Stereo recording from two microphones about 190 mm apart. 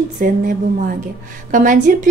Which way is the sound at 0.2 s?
50° right (ahead or behind).